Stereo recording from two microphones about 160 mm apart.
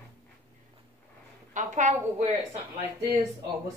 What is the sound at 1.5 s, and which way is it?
Speech, 50° right (ahead or behind).